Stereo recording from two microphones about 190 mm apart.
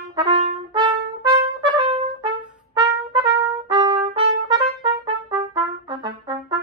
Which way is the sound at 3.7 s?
25° right (ahead or behind).